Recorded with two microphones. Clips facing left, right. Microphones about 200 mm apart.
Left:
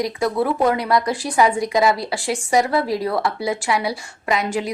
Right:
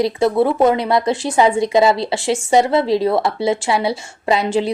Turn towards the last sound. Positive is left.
turn(degrees=-30)  # may be behind; listen again after turning